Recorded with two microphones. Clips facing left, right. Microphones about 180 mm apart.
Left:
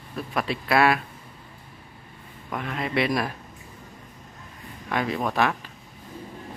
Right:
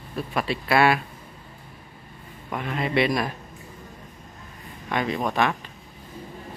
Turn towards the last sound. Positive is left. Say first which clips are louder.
# even
turn(degrees=0)  # may be behind; listen again after turning